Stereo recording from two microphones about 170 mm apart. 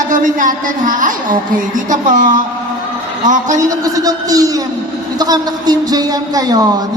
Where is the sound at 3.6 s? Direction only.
20° right (ahead or behind).